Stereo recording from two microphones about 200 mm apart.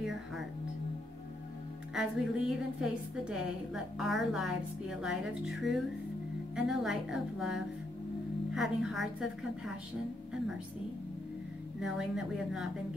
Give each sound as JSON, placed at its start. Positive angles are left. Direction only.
{"t": 0.0, "sound": "music", "side_deg": 0}
{"t": 2.0, "sound": "a woman's voice", "side_deg": -5}
{"t": 11.8, "sound": "a woman's voice", "side_deg": 0}